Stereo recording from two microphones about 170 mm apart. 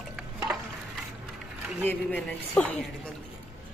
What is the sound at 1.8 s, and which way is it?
Speech, 10° left (ahead or behind).